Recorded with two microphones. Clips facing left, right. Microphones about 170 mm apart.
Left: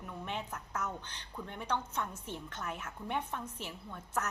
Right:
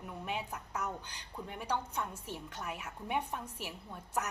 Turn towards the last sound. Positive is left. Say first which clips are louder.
# even
turn(degrees=-10)  # may be behind; listen again after turning